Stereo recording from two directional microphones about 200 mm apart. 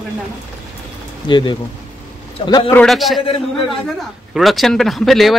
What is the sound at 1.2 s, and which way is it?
Speech, 20° left (ahead or behind).